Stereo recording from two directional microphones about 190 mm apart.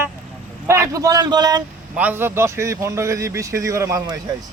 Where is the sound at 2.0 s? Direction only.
10° right (ahead or behind).